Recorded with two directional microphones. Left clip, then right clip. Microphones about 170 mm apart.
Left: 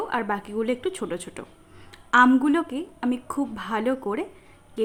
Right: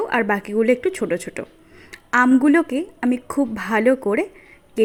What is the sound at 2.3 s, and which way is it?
A woman's voice, 25° right (ahead or behind).